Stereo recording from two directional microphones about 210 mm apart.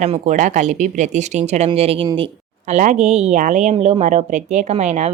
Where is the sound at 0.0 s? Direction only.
35° right (ahead or behind).